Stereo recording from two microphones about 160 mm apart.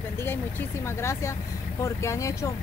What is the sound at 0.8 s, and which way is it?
Speech, 15° left (ahead or behind).